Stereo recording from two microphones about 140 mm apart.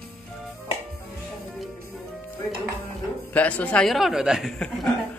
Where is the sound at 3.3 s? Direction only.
10° left (ahead or behind).